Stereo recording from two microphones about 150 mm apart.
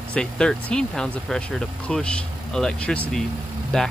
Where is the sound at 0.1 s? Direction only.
5° left (ahead or behind).